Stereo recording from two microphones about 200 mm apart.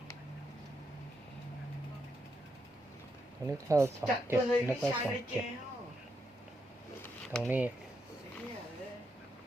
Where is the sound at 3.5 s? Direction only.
15° right (ahead or behind).